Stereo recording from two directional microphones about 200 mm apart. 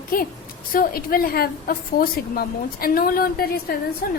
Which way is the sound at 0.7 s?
45° left (ahead or behind).